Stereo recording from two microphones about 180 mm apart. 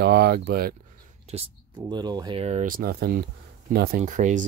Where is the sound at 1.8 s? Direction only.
25° right (ahead or behind).